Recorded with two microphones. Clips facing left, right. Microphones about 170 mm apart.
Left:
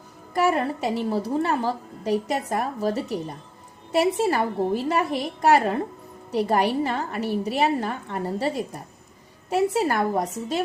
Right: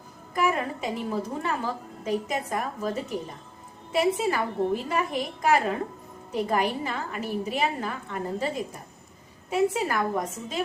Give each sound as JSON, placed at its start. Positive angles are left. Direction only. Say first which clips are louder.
{"t": 0.3, "sound": "a woman's voice", "louder": "left 4 dB", "side_deg": 40}